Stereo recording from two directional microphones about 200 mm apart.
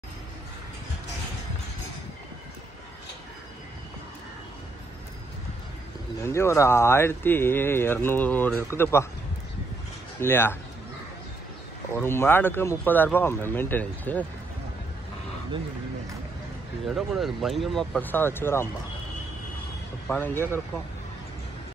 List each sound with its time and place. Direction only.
6.2 s speech: 15° left (ahead or behind)
10.2 s speech: 10° left (ahead or behind)
11.9 s speech: 10° left (ahead or behind)
16.8 s speech: centre (ahead or behind)
20.1 s speech: 10° left (ahead or behind)